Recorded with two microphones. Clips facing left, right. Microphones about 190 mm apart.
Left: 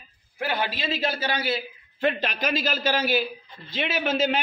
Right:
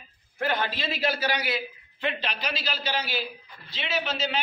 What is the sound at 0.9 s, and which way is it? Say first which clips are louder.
Speech: right 1 dB; 25° left (ahead or behind).